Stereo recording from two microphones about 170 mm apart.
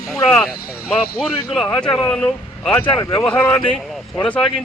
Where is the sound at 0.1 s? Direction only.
5° left (ahead or behind).